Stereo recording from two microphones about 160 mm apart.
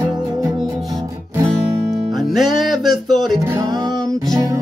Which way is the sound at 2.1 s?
Centre (ahead or behind).